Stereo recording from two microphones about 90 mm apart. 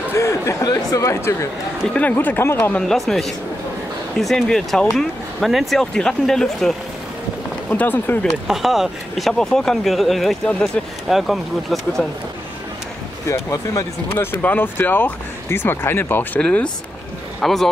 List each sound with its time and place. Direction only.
0.1 s speech: 35° left (ahead or behind)
2.0 s speech: 20° left (ahead or behind)
2.7 s speech: 5° left (ahead or behind)
7.7 s speech: 20° left (ahead or behind)
8.5 s speech: 5° right (ahead or behind)
13.3 s speech: 30° left (ahead or behind)
16.3 s speech: 10° left (ahead or behind)